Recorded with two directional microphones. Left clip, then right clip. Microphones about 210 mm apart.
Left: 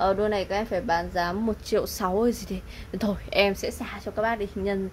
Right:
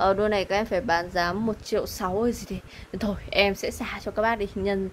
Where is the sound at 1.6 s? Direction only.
10° left (ahead or behind); by 4.8 s 5° right (ahead or behind).